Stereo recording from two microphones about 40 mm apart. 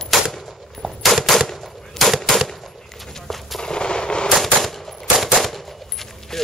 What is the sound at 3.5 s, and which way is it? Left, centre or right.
Gunshot, centre.